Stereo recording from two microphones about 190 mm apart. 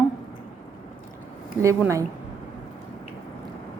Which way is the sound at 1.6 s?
15° right (ahead or behind).